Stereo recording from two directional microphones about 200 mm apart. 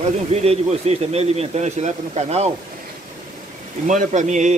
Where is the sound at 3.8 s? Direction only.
40° right (ahead or behind).